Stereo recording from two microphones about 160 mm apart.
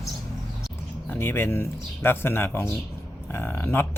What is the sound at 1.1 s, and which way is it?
Speech, 15° left (ahead or behind).